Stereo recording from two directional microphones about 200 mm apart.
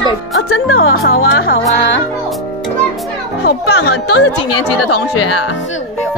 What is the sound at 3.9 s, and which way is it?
Speech, 75° left (ahead or behind).